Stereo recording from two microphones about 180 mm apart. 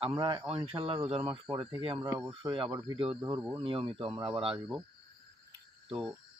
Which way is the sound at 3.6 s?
30° right (ahead or behind).